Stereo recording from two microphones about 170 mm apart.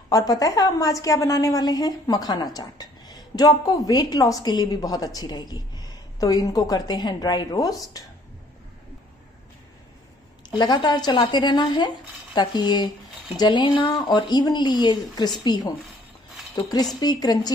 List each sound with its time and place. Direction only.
0.1 s a woman's voice: 20° left (ahead or behind)
10.6 s a woman's voice: 25° left (ahead or behind)